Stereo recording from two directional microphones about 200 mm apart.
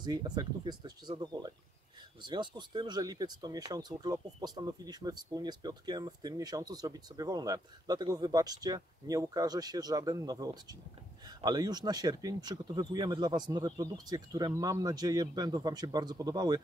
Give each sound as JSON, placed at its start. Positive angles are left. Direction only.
{"t": 0.0, "sound": "speech", "side_deg": -20}